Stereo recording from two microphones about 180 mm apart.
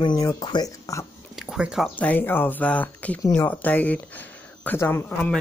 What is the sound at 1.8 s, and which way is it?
Speech, 10° left (ahead or behind).